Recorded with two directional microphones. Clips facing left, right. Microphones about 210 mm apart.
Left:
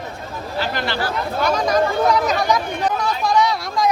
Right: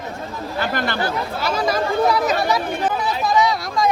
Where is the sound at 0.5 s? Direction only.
50° right (ahead or behind).